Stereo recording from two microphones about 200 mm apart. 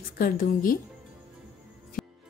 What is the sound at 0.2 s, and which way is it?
Speech, 45° left (ahead or behind).